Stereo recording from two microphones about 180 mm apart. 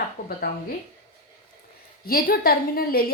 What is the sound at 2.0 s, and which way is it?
A woman's voice, 55° left (ahead or behind).